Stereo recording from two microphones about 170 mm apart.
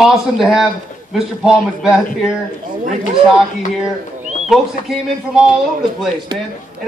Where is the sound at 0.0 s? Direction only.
Centre (ahead or behind).